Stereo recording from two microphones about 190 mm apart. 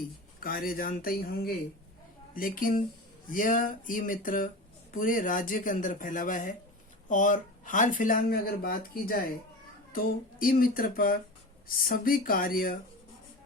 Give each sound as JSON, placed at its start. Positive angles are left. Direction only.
{"t": 0.3, "sound": "speech", "side_deg": 50}